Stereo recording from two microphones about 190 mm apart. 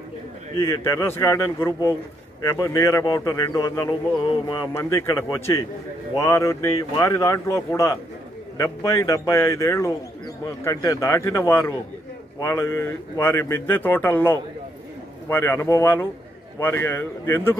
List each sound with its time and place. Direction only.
0.6 s speech: 15° left (ahead or behind)